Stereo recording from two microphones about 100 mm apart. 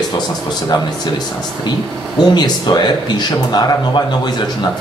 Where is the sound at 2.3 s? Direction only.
45° left (ahead or behind).